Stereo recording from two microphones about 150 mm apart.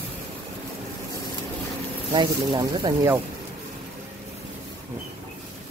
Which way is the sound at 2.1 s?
30° right (ahead or behind).